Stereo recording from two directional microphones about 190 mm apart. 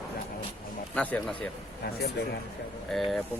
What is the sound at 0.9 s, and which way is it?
Speech, 10° left (ahead or behind).